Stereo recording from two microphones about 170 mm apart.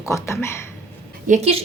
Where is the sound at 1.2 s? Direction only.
40° right (ahead or behind).